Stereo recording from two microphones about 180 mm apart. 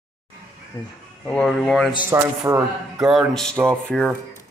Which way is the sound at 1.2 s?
5° left (ahead or behind).